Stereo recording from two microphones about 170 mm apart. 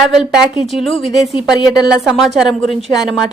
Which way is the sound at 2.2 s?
Centre (ahead or behind).